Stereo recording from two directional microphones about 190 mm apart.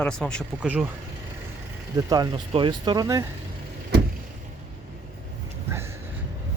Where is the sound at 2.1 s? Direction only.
20° right (ahead or behind).